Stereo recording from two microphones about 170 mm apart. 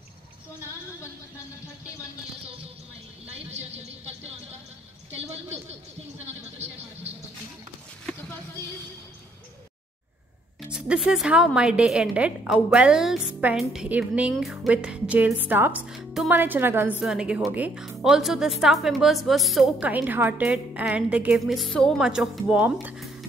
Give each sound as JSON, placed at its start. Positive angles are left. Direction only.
{"t": 3.3, "sound": "speech", "side_deg": -40}
{"t": 10.7, "sound": "a woman's voice", "side_deg": -5}